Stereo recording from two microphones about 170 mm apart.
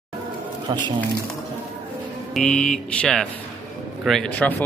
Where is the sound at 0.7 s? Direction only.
25° right (ahead or behind).